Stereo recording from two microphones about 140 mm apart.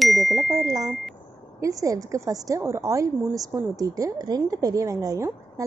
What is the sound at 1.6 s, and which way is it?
A woman's voice, 25° right (ahead or behind).